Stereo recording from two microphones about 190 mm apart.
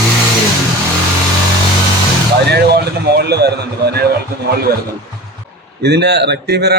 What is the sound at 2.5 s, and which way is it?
A man's voice, 60° right (ahead or behind).